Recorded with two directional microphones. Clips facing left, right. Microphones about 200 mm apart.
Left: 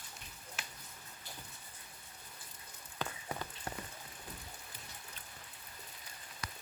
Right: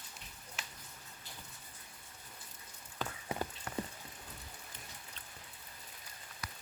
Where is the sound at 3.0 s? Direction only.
Centre (ahead or behind).